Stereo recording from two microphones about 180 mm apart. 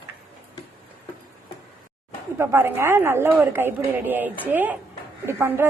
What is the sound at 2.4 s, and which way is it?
A woman's voice, 15° right (ahead or behind).